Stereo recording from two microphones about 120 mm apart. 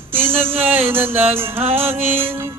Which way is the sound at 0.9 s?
20° right (ahead or behind).